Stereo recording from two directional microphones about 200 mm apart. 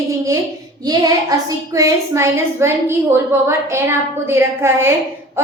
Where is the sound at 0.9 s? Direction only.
20° right (ahead or behind).